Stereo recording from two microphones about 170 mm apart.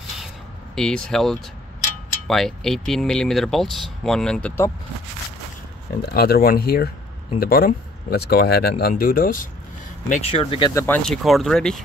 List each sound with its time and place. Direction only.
0.7 s speech: 5° left (ahead or behind)
6.1 s speech: 65° left (ahead or behind); by 10.3 s 45° left (ahead or behind)
10.3 s speech: 30° left (ahead or behind)
10.7 s speech: 15° left (ahead or behind)
11.0 s speech: centre (ahead or behind)